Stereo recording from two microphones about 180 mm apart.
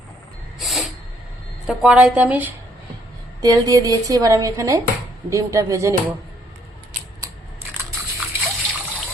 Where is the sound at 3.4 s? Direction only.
20° right (ahead or behind).